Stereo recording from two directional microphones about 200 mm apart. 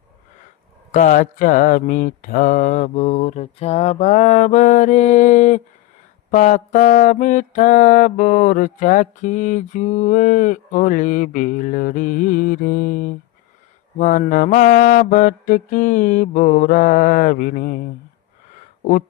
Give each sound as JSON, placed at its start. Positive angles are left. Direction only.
{"t": 0.9, "sound": "mantra", "side_deg": 40}